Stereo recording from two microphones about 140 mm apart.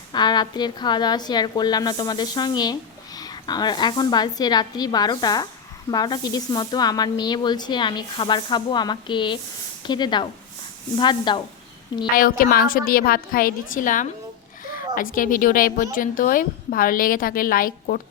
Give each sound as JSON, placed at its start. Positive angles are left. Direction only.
{"t": 0.1, "sound": "a woman's voice", "side_deg": 30}
{"t": 12.1, "sound": "a woman's voice", "side_deg": 90}